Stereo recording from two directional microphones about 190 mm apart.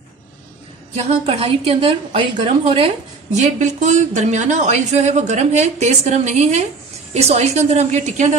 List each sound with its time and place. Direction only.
0.9 s speech: 35° right (ahead or behind)
3.3 s speech: 40° right (ahead or behind)